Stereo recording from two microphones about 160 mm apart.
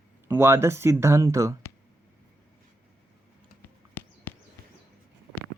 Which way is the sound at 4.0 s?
10° left (ahead or behind).